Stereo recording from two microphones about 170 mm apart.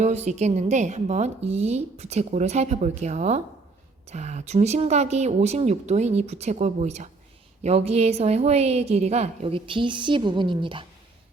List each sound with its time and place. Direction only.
0.0 s a woman's voice: 40° right (ahead or behind)